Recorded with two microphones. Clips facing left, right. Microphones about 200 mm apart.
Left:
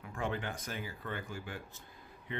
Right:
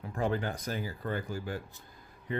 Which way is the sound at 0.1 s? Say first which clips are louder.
Right 6 dB; 40° right (ahead or behind).